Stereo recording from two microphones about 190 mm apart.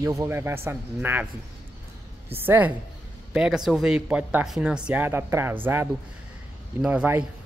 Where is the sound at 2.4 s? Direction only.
10° right (ahead or behind).